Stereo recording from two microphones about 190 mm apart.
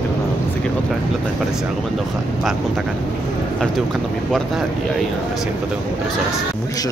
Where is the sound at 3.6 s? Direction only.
Centre (ahead or behind).